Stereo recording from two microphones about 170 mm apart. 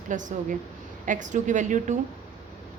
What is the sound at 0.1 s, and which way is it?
A woman's voice, 50° right (ahead or behind).